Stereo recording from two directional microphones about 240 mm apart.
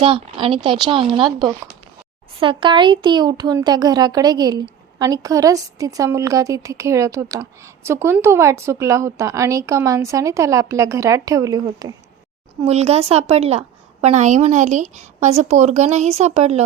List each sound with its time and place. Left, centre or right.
0.0 s a woman's voice: right
2.4 s a woman's voice: right
12.6 s a woman's voice: right